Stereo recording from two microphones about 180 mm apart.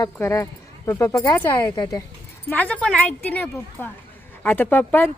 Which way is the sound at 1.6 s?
25° left (ahead or behind).